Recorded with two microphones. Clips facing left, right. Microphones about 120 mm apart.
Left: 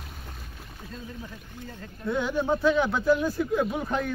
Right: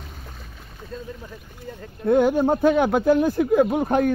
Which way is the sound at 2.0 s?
50° right (ahead or behind).